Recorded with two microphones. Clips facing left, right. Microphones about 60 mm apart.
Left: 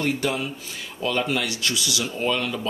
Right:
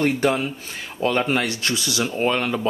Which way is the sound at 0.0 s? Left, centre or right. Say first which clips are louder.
Right 5 dB; right.